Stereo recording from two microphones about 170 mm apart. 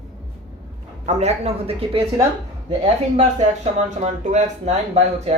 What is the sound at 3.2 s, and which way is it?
Speech, 40° right (ahead or behind).